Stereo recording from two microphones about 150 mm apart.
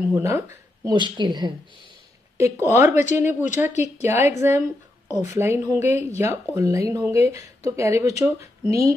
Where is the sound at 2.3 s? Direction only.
20° right (ahead or behind).